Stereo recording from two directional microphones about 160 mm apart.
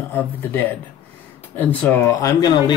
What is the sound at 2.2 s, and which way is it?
Speech, 25° left (ahead or behind).